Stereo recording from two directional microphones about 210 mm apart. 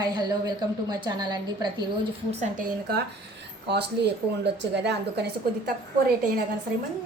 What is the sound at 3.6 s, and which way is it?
A woman's voice, 55° right (ahead or behind).